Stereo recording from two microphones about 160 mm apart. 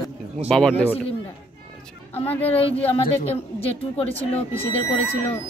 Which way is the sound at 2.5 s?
35° left (ahead or behind).